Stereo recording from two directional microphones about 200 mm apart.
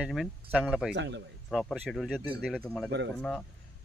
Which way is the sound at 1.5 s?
Centre (ahead or behind).